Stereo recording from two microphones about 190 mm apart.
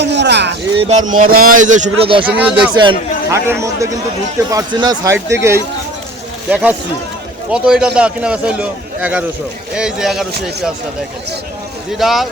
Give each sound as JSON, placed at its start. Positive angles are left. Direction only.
{"t": 0.0, "sound": "a sound", "side_deg": -65}
{"t": 0.8, "sound": "a man's voice", "side_deg": -40}
{"t": 2.2, "sound": "a man's voice", "side_deg": -5}
{"t": 11.9, "sound": "a man's voice", "side_deg": 0}